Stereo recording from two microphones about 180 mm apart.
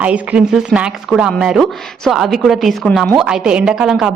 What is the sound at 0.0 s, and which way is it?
A woman's voice, 5° right (ahead or behind).